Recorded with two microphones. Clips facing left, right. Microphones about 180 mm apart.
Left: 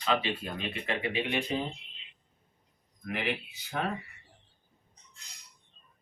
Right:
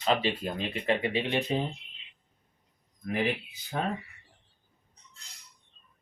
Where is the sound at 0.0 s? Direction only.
40° right (ahead or behind).